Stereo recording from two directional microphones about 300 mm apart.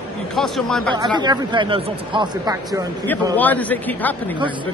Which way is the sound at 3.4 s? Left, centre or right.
Centre.